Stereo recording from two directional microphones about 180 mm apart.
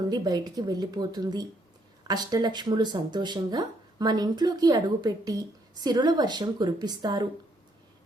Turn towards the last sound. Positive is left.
turn(degrees=-20)  # may be behind; listen again after turning